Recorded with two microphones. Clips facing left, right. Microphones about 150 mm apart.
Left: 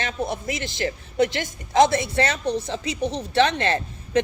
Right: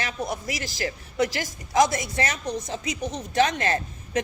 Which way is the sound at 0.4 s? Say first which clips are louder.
Left 3 dB; 25° left (ahead or behind).